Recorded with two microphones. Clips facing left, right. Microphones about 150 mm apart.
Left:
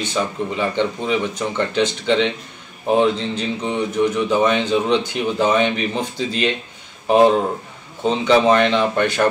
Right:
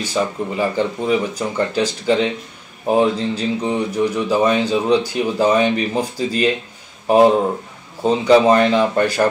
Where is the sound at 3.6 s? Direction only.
10° right (ahead or behind).